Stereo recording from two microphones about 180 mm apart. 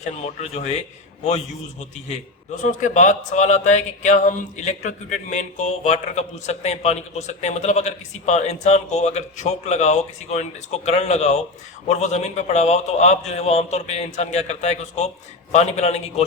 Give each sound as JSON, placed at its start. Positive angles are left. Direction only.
{"t": 0.0, "sound": "speech", "side_deg": 40}
{"t": 2.6, "sound": "speech", "side_deg": 45}